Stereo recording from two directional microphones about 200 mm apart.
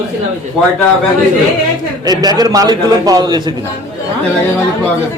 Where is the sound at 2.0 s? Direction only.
20° right (ahead or behind).